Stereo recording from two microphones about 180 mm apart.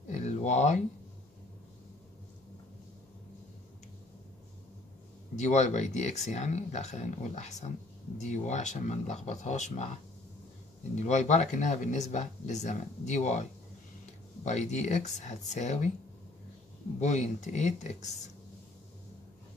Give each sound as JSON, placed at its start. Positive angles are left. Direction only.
{"t": 0.1, "sound": "a sound", "side_deg": 40}
{"t": 5.3, "sound": "speech", "side_deg": 40}
{"t": 11.0, "sound": "speech", "side_deg": 40}
{"t": 17.0, "sound": "speech", "side_deg": 40}